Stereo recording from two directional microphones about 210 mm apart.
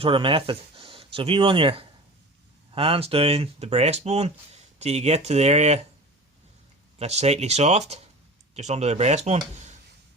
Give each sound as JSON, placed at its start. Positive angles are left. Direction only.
{"t": 0.0, "sound": "speech", "side_deg": -25}
{"t": 7.0, "sound": "speech", "side_deg": -30}